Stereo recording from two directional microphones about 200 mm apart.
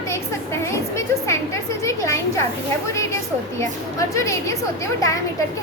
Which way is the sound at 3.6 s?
15° left (ahead or behind).